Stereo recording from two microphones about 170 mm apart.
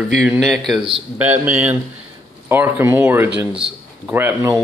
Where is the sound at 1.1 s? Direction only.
10° right (ahead or behind).